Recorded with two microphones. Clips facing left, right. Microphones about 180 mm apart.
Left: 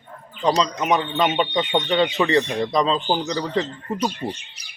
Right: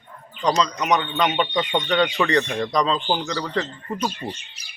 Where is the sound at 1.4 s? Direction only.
20° left (ahead or behind).